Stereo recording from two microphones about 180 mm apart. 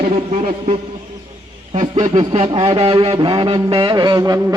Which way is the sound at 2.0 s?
35° right (ahead or behind).